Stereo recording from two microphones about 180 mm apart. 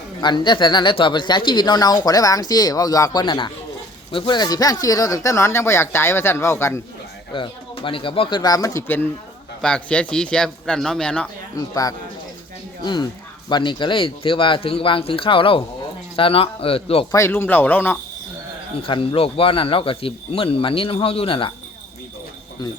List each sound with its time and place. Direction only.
0.2 s speech: 25° left (ahead or behind)
7.3 s a man's voice: 30° left (ahead or behind); by 11.3 s 5° left (ahead or behind)
11.5 s speech: 20° left (ahead or behind)
17.1 s speech: 15° left (ahead or behind)
18.8 s speech: 30° left (ahead or behind)